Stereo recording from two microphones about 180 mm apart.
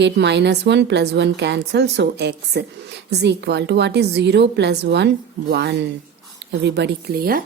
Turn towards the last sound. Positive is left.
turn(degrees=-55)  # may be behind; listen again after turning